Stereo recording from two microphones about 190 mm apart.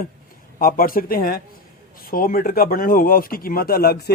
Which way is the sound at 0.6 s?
50° left (ahead or behind).